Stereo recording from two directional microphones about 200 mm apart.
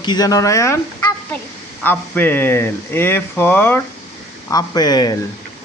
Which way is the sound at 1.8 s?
10° left (ahead or behind).